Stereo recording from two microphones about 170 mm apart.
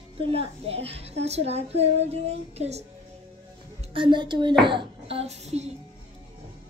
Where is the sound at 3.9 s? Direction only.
30° right (ahead or behind).